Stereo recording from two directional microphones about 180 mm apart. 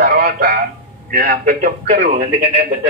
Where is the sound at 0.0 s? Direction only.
50° right (ahead or behind).